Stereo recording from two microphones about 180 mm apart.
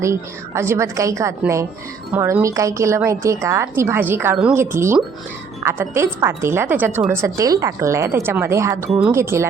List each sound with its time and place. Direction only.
0.0 s a woman's voice: 15° right (ahead or behind)
8.9 s a woman's voice: 5° right (ahead or behind)